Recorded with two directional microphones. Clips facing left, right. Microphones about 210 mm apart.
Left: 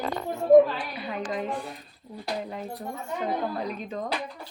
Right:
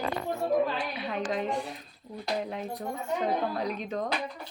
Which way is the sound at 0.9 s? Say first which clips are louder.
Even; centre (ahead or behind).